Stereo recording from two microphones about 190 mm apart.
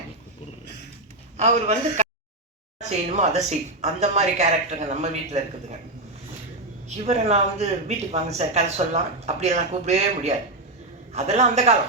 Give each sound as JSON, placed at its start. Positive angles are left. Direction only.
{"t": 1.4, "sound": "speech", "side_deg": -35}
{"t": 3.1, "sound": "speech", "side_deg": -35}
{"t": 6.8, "sound": "speech", "side_deg": -35}